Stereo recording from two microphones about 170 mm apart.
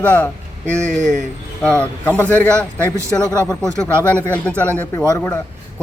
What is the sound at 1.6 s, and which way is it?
Speech, 5° left (ahead or behind).